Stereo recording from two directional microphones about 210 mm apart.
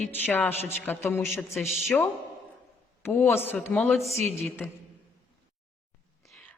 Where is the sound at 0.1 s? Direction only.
10° left (ahead or behind).